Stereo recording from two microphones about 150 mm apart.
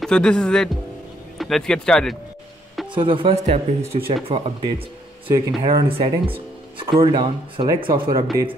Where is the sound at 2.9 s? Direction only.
35° right (ahead or behind).